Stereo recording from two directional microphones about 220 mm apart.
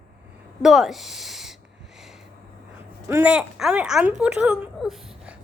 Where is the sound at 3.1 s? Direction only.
5° right (ahead or behind).